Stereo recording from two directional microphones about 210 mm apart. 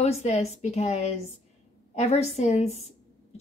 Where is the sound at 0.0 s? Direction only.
30° left (ahead or behind).